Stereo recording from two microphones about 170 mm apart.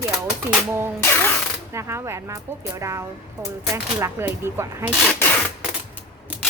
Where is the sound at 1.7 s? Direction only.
15° right (ahead or behind).